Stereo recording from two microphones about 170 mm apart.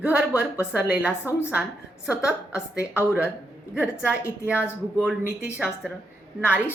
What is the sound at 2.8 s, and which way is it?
Speech, 15° left (ahead or behind).